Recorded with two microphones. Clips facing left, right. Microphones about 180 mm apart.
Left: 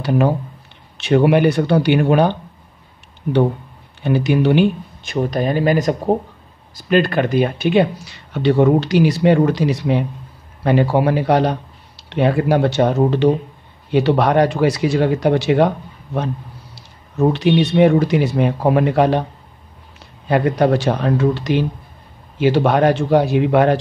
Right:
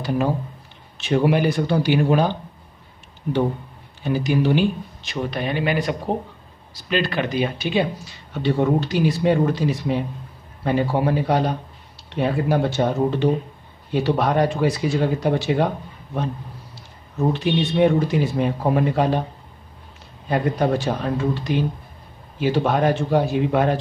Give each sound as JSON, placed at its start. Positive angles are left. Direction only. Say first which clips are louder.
{"t": 0.9, "sound": "speech", "louder": "left 5 dB", "side_deg": 65}
{"t": 4.0, "sound": "speech", "louder": "left 4 dB", "side_deg": 65}
{"t": 16.7, "sound": "speech", "louder": "left 5 dB", "side_deg": 80}
{"t": 20.2, "sound": "speech", "louder": "left 5 dB", "side_deg": 70}